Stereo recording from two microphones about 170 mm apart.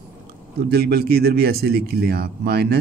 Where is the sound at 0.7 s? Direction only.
70° right (ahead or behind).